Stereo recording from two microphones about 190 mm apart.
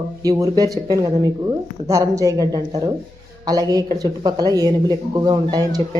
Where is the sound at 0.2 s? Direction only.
20° right (ahead or behind).